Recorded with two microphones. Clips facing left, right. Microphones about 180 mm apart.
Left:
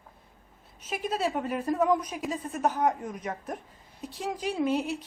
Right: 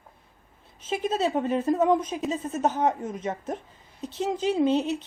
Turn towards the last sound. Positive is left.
turn(degrees=-25)  # may be behind; listen again after turning